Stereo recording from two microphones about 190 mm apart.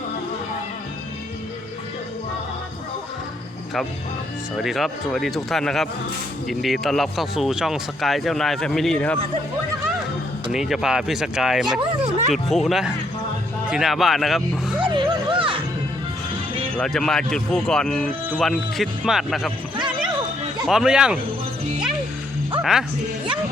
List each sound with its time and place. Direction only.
4.5 s speech: centre (ahead or behind)
10.5 s speech: 5° right (ahead or behind)
14.8 s music: 25° right (ahead or behind)
16.7 s speech: 5° left (ahead or behind)
20.7 s speech: 5° right (ahead or behind)
22.6 s speech: centre (ahead or behind)